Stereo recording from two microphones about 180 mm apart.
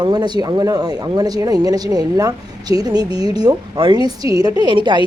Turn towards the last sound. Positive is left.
turn(degrees=-25)  # may be behind; listen again after turning